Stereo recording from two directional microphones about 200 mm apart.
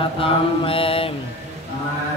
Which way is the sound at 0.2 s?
25° left (ahead or behind).